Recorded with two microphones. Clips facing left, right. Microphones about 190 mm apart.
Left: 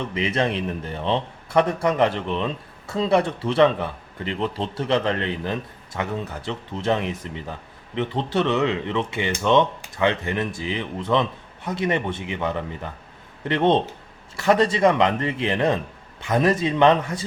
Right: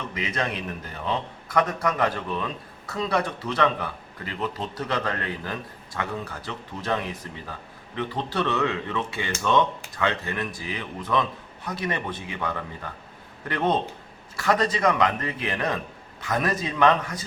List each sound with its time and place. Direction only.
0.1 s a man's voice: 25° left (ahead or behind)